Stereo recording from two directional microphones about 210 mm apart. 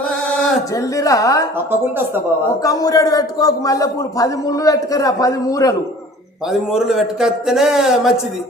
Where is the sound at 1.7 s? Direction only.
10° right (ahead or behind).